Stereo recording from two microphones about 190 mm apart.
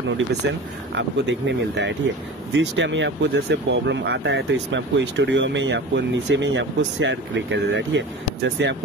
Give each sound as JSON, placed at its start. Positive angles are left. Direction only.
{"t": 0.9, "sound": "speech", "side_deg": -65}